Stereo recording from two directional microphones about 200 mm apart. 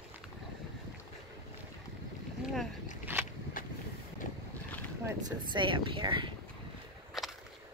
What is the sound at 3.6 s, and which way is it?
Boat, 45° left (ahead or behind).